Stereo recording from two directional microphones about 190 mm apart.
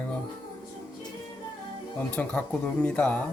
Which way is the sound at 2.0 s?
5° left (ahead or behind).